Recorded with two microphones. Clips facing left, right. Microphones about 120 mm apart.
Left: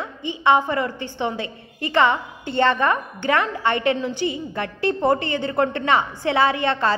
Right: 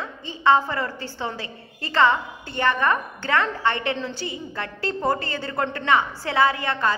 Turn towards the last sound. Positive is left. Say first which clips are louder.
# left 2 dB
turn(degrees=25)  # may be behind; listen again after turning